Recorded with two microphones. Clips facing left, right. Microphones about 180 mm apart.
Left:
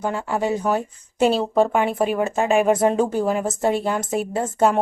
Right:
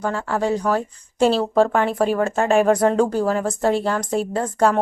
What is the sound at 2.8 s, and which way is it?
A woman's voice, 15° left (ahead or behind).